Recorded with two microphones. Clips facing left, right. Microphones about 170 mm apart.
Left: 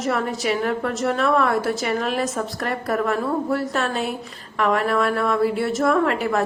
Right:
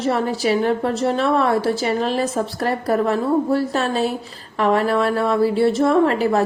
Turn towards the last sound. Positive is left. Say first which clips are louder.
# right 4 dB
turn(degrees=-35)  # may be behind; listen again after turning